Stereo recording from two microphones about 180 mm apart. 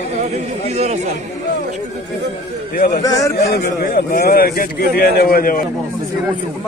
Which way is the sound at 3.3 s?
55° left (ahead or behind).